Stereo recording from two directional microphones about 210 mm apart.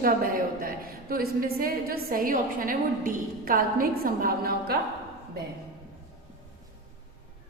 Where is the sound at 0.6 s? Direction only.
45° right (ahead or behind).